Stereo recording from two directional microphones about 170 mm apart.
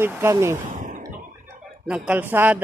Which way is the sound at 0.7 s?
50° right (ahead or behind).